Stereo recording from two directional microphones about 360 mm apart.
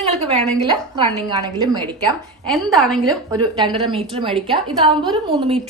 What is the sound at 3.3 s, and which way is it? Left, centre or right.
A woman's voice, centre.